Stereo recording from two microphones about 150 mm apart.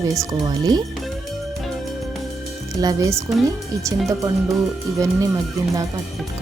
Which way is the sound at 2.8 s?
20° right (ahead or behind).